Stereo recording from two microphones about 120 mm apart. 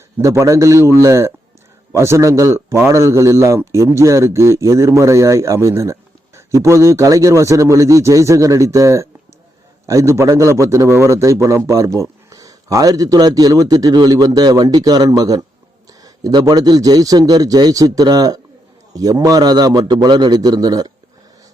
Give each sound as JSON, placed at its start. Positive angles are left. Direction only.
{"t": 0.2, "sound": "a man's voice", "side_deg": -25}